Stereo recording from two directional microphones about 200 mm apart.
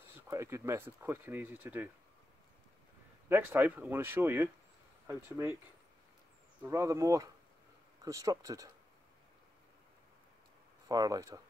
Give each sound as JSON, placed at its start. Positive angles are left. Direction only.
{"t": 0.3, "sound": "speech", "side_deg": -15}
{"t": 3.3, "sound": "speech", "side_deg": -10}
{"t": 6.6, "sound": "speech", "side_deg": -15}
{"t": 10.9, "sound": "speech", "side_deg": -15}